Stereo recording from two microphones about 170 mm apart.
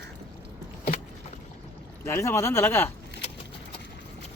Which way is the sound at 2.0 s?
15° left (ahead or behind).